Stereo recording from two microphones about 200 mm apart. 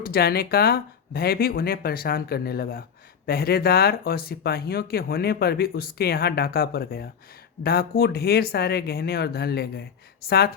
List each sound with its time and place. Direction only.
0.0 s speech: 50° left (ahead or behind)